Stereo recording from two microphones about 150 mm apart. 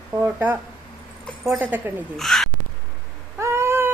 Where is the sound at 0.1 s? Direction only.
15° right (ahead or behind).